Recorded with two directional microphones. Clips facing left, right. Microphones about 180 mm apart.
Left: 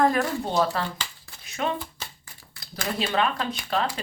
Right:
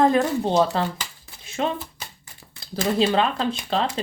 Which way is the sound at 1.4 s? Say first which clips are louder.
Right 4 dB; 30° right (ahead or behind).